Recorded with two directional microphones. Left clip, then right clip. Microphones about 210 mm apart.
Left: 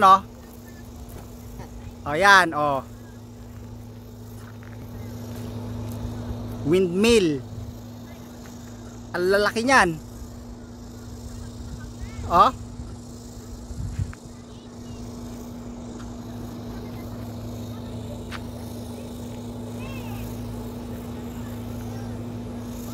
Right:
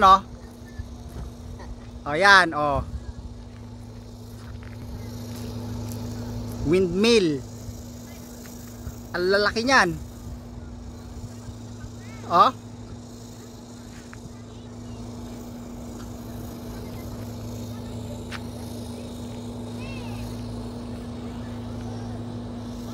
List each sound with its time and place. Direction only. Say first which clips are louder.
2.0 s speech: even; centre (ahead or behind)
6.7 s speech: left 1 dB; centre (ahead or behind)
9.1 s speech: left 1 dB; 5° left (ahead or behind)
12.3 s speech: left 1 dB; centre (ahead or behind)
15.0 s vehicle: left 1 dB; 40° right (ahead or behind)
18.7 s vehicle: even; 5° right (ahead or behind)